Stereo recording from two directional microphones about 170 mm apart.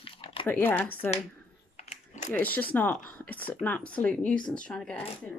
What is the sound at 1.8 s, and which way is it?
Typing, 45° left (ahead or behind).